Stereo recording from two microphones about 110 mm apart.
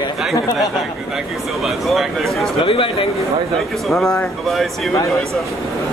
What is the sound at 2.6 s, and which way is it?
Speech, 50° left (ahead or behind).